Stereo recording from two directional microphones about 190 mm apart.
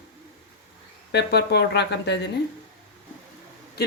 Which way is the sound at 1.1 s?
60° left (ahead or behind).